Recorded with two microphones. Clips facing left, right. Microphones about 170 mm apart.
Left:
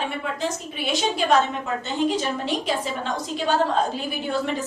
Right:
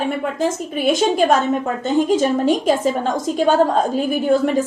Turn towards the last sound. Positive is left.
turn(degrees=-45)  # may be behind; listen again after turning